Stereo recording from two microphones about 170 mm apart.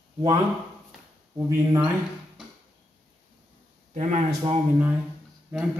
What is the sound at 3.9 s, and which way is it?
Speech, 45° right (ahead or behind).